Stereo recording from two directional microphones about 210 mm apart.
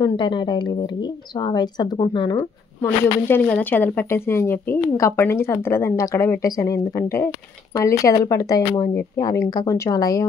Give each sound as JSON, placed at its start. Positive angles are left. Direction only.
{"t": 0.0, "sound": "a woman's voice", "side_deg": 25}